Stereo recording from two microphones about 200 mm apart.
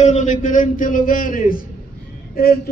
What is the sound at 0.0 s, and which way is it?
A man's voice, 35° left (ahead or behind).